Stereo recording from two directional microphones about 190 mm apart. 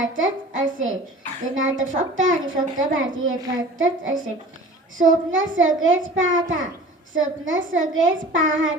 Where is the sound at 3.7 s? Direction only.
90° right.